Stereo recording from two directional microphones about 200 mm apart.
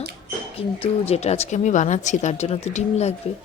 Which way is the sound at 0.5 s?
30° left (ahead or behind).